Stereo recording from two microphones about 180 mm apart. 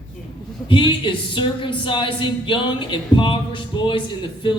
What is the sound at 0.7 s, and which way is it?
Speech, 25° left (ahead or behind).